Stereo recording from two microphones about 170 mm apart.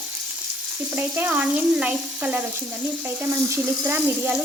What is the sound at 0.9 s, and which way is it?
Speech, 10° right (ahead or behind).